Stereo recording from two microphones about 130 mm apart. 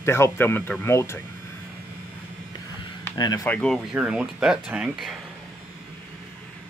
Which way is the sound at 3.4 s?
15° left (ahead or behind).